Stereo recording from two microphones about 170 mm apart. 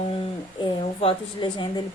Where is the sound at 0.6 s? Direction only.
30° left (ahead or behind).